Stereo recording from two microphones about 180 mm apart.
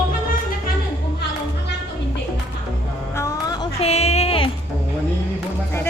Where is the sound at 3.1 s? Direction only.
20° left (ahead or behind).